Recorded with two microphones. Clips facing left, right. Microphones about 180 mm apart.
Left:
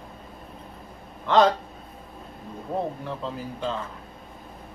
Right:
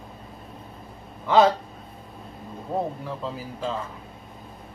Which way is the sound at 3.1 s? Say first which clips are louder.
Even; 5° right (ahead or behind).